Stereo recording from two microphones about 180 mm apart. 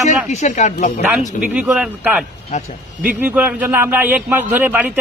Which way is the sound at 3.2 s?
10° right (ahead or behind).